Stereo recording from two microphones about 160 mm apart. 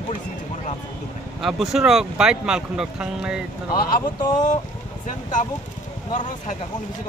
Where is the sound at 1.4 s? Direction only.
Centre (ahead or behind).